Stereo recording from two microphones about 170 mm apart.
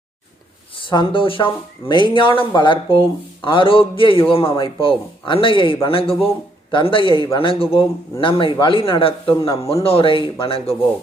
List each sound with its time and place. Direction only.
0.8 s a man's voice: 30° left (ahead or behind)